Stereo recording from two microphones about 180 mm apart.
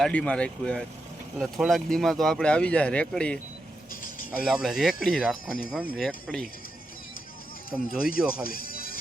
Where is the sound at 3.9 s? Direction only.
50° left (ahead or behind).